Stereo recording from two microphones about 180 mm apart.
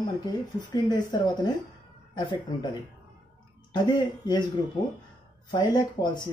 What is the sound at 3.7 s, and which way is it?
Speech, 25° left (ahead or behind).